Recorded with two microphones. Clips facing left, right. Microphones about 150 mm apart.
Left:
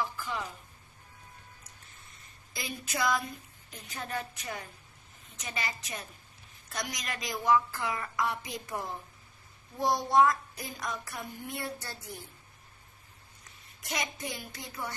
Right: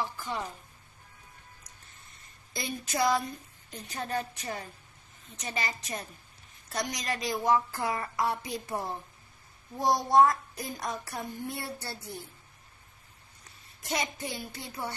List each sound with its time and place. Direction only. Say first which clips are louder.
0.0 s a woman's voice: right 1 dB; 35° right (ahead or behind)
2.5 s speech: right 4 dB; 35° right (ahead or behind)
9.8 s speech: right 2 dB; 40° right (ahead or behind)
13.8 s a child's voice: right 3 dB; 30° right (ahead or behind)